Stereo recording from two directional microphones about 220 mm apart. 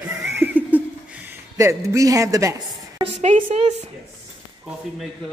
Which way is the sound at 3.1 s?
30° right (ahead or behind).